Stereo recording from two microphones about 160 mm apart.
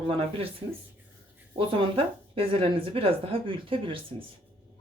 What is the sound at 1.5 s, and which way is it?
Speech, 35° right (ahead or behind).